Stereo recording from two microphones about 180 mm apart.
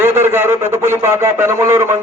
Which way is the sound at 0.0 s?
15° right (ahead or behind).